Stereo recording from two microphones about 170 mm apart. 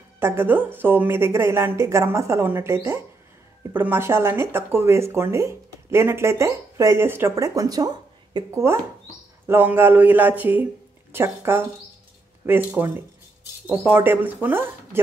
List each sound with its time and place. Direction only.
0.2 s speech: 15° right (ahead or behind)